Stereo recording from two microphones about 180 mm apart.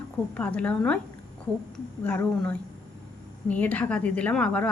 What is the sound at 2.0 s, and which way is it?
A woman's voice, 10° left (ahead or behind).